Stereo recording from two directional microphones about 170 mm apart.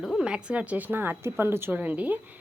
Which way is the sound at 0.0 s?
5° right (ahead or behind).